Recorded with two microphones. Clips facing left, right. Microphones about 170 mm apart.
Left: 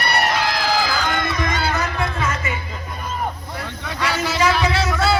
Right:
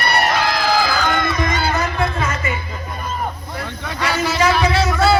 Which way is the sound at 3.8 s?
50° right (ahead or behind).